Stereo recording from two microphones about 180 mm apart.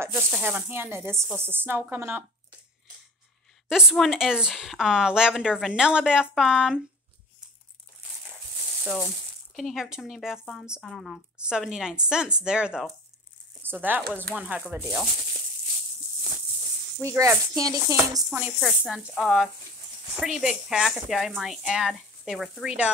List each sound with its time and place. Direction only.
0.0 s speech: 10° right (ahead or behind)
3.6 s speech: centre (ahead or behind)
9.6 s speech: centre (ahead or behind)
17.0 s speech: 15° right (ahead or behind)
18.6 s speech: centre (ahead or behind)